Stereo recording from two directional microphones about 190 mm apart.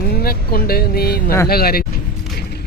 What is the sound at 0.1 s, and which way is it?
Speech, 50° left (ahead or behind).